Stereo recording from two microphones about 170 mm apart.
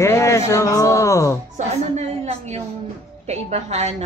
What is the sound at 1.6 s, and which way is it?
A woman's voice, 40° right (ahead or behind).